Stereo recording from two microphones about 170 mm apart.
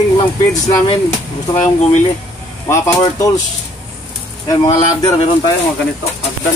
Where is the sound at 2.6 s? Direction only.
20° left (ahead or behind).